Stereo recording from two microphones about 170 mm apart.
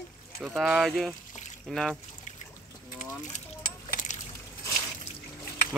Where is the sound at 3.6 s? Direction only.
50° left (ahead or behind).